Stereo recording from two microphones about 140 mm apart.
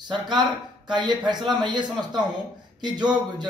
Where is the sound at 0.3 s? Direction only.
30° right (ahead or behind).